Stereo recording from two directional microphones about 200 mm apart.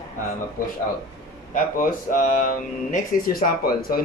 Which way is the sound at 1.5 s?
40° left (ahead or behind).